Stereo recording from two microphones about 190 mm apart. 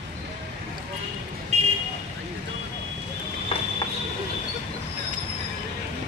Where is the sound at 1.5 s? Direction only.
35° right (ahead or behind).